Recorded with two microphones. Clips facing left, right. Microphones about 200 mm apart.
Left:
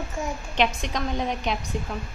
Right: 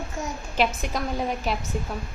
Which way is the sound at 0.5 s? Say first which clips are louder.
Even; 5° right (ahead or behind).